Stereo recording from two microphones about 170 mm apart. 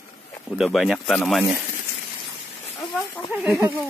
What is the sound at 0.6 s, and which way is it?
Speech, centre (ahead or behind).